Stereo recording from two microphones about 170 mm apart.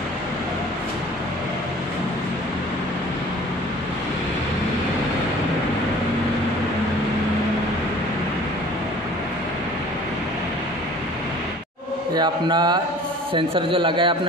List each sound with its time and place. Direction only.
12.2 s speech: 25° right (ahead or behind)